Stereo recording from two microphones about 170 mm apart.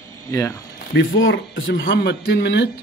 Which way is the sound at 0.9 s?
90° left.